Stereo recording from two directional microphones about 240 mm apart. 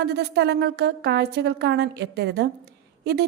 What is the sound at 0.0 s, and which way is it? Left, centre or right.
A woman's voice, right.